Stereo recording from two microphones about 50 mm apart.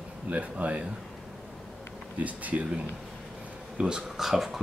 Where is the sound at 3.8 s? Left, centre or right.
Centre.